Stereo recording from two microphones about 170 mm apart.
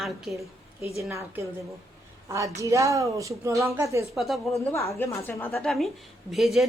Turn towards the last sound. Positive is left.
turn(degrees=0)  # may be behind; listen again after turning